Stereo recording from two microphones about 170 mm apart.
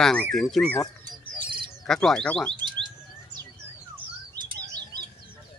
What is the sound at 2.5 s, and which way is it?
Alarm, 25° right (ahead or behind).